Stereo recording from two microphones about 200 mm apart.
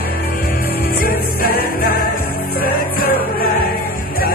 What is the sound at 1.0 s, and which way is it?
Music, 45° left (ahead or behind).